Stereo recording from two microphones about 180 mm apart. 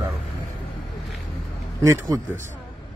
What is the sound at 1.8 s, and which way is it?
Speech, 15° right (ahead or behind).